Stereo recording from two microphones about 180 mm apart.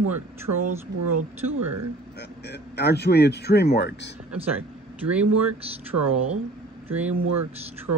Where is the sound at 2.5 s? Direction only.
65° left (ahead or behind).